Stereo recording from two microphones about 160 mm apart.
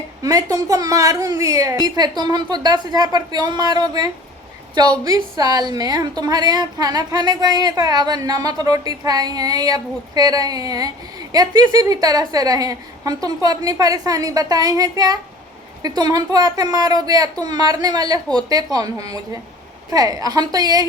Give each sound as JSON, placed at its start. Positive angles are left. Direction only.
{"t": 0.2, "sound": "a woman's voice", "side_deg": -20}